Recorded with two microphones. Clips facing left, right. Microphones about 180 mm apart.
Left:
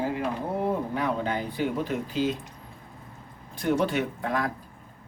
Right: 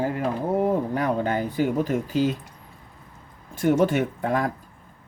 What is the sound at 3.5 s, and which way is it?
Speech, 50° right (ahead or behind).